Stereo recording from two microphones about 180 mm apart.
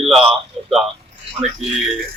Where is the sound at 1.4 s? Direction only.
35° right (ahead or behind).